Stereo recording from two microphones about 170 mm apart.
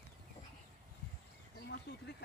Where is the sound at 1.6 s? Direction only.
70° left (ahead or behind).